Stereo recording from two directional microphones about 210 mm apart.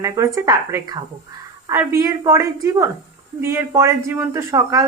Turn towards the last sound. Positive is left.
turn(degrees=-15)  # may be behind; listen again after turning